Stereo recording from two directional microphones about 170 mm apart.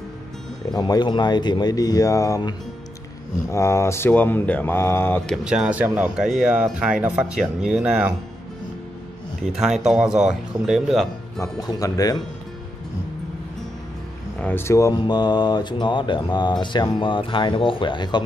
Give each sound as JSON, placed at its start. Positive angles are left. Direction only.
{"t": 0.7, "sound": "speech", "side_deg": 25}
{"t": 3.5, "sound": "speech", "side_deg": 15}
{"t": 5.3, "sound": "speech", "side_deg": -5}
{"t": 9.4, "sound": "speech", "side_deg": -5}
{"t": 11.4, "sound": "speech", "side_deg": 20}
{"t": 14.4, "sound": "speech", "side_deg": 15}